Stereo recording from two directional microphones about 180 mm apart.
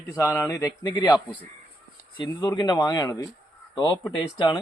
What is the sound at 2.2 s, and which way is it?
Speech, 25° left (ahead or behind).